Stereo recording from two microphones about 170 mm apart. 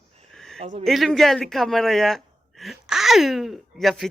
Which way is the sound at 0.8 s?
Centre (ahead or behind).